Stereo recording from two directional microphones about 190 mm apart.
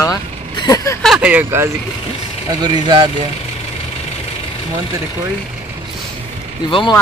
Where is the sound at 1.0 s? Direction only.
5° right (ahead or behind).